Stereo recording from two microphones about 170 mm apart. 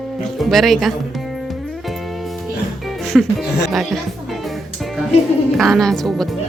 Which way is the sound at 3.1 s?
Centre (ahead or behind).